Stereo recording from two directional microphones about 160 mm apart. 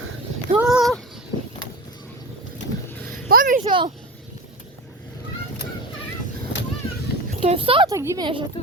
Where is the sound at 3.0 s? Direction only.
60° right (ahead or behind).